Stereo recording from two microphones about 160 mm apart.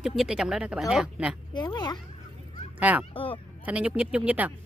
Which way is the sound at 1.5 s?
30° left (ahead or behind).